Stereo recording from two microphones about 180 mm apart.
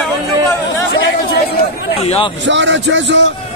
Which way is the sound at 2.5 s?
90° right.